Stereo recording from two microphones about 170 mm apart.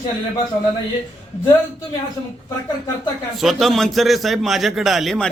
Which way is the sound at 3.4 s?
Centre (ahead or behind).